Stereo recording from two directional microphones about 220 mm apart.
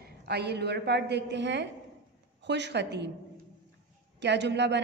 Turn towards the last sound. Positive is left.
turn(degrees=-50)  # may be behind; listen again after turning